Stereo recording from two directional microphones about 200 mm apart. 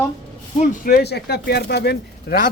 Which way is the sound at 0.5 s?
35° left (ahead or behind).